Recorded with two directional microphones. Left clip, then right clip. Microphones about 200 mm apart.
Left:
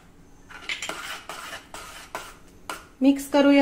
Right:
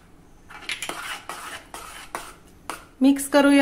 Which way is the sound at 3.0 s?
20° right (ahead or behind).